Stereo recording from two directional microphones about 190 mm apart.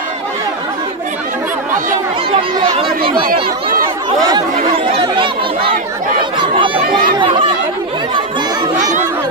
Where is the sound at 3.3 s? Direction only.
50° right (ahead or behind).